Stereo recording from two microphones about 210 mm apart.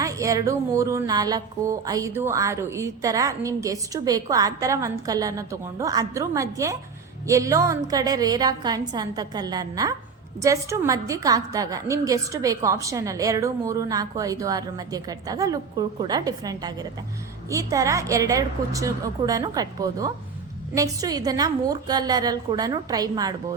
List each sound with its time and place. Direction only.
0.0 s a woman's voice: 15° right (ahead or behind)